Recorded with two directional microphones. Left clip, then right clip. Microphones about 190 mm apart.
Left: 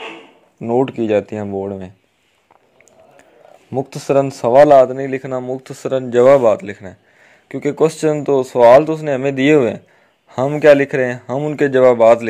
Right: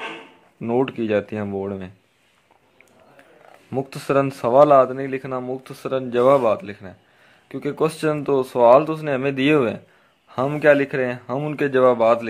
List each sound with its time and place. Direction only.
0.6 s speech: 10° left (ahead or behind)
3.7 s a man's voice: 10° left (ahead or behind)